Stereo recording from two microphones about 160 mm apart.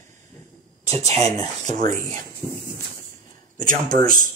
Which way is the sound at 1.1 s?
20° left (ahead or behind).